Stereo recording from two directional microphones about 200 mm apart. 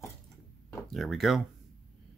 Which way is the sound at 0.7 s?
Centre (ahead or behind).